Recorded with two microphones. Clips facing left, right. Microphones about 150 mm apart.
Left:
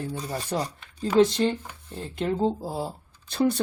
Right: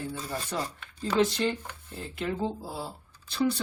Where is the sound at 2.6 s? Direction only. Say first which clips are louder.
Left 6 dB; 45° left (ahead or behind).